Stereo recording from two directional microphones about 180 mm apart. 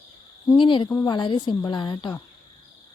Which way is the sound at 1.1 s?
25° left (ahead or behind).